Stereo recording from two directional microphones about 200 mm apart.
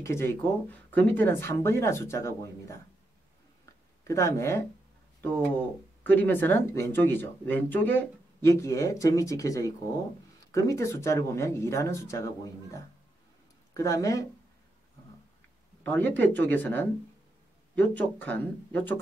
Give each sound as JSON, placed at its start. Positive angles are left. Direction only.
{"t": 0.0, "sound": "speech", "side_deg": 15}
{"t": 4.1, "sound": "speech", "side_deg": 15}
{"t": 6.0, "sound": "speech", "side_deg": 10}
{"t": 13.7, "sound": "speech", "side_deg": 15}
{"t": 15.8, "sound": "speech", "side_deg": 10}